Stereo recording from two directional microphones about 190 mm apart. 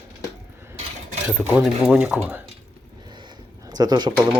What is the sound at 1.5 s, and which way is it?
Speech, 5° right (ahead or behind).